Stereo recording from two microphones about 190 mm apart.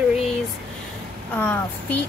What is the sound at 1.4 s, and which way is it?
Speech, 10° left (ahead or behind).